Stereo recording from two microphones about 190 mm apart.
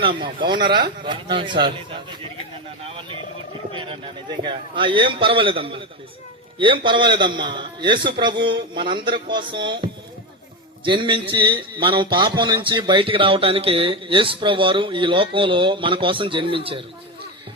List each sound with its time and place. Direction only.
0.0 s a man's voice: 25° right (ahead or behind)
3.7 s a man's voice: 25° right (ahead or behind)